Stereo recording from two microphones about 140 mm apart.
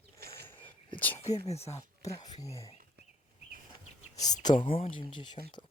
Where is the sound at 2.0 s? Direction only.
25° left (ahead or behind).